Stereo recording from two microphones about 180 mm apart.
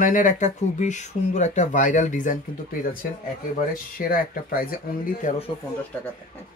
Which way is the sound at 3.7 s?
50° left (ahead or behind).